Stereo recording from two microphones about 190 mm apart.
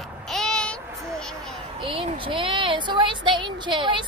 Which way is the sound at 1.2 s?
5° left (ahead or behind).